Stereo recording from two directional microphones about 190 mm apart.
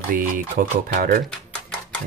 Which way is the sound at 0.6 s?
50° right (ahead or behind).